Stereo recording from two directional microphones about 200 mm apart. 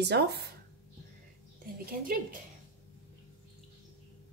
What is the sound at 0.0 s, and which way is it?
Speech, 55° right (ahead or behind).